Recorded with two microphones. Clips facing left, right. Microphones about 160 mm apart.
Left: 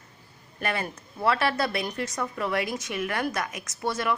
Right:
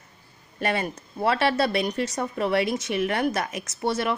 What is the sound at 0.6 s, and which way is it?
Speech, 25° right (ahead or behind).